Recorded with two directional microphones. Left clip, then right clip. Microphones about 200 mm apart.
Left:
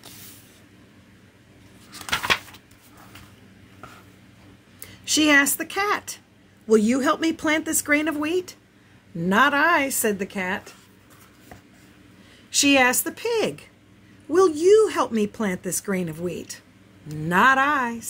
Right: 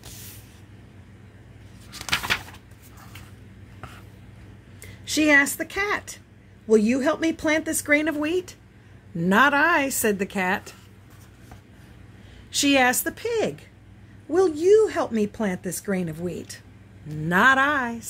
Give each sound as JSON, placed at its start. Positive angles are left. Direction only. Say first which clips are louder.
{"t": 5.0, "sound": "a woman's voice", "louder": "left 1 dB", "side_deg": 10}
{"t": 12.4, "sound": "a woman's voice", "louder": "left 2 dB", "side_deg": 0}